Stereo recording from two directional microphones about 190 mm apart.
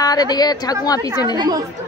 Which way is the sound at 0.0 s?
20° left (ahead or behind).